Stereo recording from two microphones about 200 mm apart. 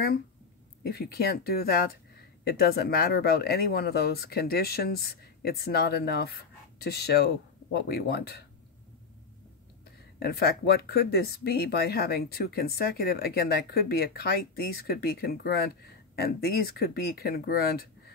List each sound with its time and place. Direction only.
0.8 s speech: 50° left (ahead or behind)
10.1 s speech: 50° left (ahead or behind)